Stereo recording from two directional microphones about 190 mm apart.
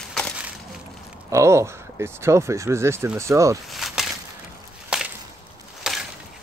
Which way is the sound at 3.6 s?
Centre (ahead or behind).